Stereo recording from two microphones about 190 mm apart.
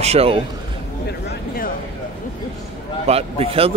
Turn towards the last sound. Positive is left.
turn(degrees=-30)  # may be behind; listen again after turning